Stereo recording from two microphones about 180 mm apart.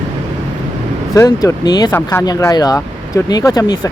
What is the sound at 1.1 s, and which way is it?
Speech, 20° left (ahead or behind).